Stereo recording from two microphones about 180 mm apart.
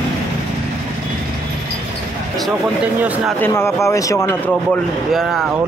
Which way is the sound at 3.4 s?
15° left (ahead or behind).